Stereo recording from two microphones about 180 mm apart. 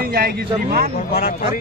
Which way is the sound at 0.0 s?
60° right (ahead or behind).